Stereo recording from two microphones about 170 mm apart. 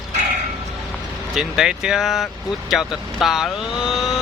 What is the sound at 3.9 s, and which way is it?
Vehicle, centre (ahead or behind).